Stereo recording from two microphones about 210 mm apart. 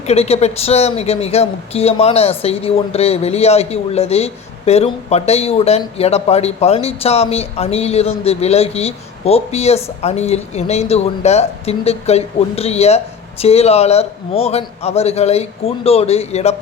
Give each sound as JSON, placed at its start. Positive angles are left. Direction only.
{"t": 0.1, "sound": "speech", "side_deg": 30}